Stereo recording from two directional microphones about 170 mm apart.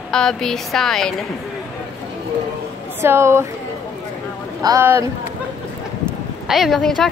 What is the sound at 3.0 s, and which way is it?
Speech, 15° right (ahead or behind).